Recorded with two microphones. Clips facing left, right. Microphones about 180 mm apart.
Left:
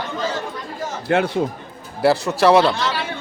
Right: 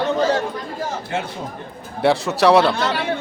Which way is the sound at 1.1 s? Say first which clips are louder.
Left 10 dB; 65° left (ahead or behind).